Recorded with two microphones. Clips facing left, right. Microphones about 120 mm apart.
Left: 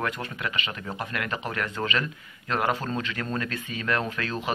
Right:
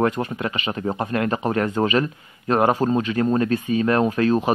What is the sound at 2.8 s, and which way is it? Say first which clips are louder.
Speech: right 11 dB; 20° right (ahead or behind).